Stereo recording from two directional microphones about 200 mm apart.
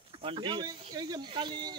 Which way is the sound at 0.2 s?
25° right (ahead or behind).